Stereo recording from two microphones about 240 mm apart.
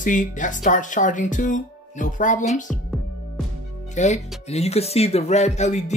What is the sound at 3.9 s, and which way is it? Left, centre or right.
Speech, left.